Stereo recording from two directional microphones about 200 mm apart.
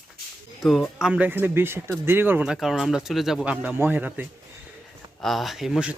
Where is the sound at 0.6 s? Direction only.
Centre (ahead or behind).